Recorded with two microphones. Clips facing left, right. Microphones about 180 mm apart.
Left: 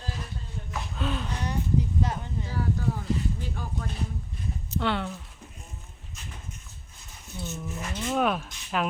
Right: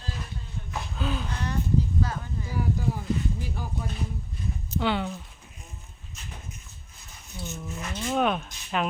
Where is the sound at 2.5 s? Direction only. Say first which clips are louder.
Right 1 dB; 15° right (ahead or behind).